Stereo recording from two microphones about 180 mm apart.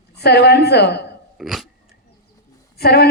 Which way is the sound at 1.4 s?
Centre (ahead or behind).